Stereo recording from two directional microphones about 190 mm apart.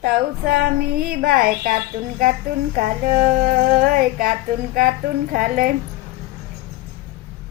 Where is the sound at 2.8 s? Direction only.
50° right (ahead or behind).